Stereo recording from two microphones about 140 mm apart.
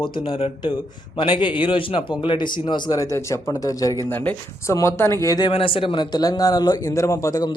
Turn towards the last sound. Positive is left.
turn(degrees=25)  # may be behind; listen again after turning